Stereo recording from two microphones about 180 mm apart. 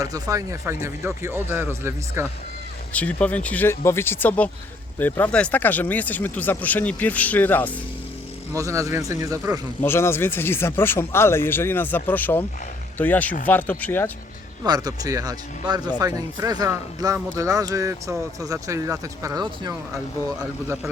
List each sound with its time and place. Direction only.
0.0 s speech: 20° right (ahead or behind)
2.9 s speech: 10° left (ahead or behind)
8.5 s speech: 15° right (ahead or behind)
9.8 s speech: 15° left (ahead or behind)
14.6 s speech: 20° right (ahead or behind)